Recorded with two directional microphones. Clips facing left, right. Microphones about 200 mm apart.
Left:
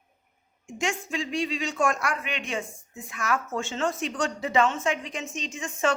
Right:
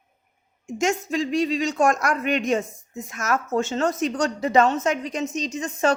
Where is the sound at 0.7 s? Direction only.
40° right (ahead or behind).